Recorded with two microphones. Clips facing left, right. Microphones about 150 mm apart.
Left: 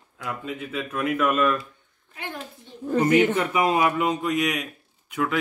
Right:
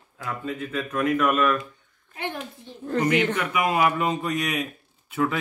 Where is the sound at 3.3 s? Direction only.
30° left (ahead or behind).